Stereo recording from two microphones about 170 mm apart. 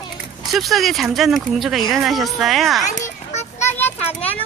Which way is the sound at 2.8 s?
45° left (ahead or behind).